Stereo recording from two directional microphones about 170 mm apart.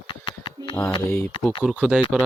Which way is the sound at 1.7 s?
5° right (ahead or behind).